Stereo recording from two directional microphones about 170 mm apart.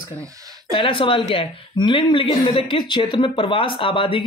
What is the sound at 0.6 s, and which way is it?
Speech, 30° left (ahead or behind).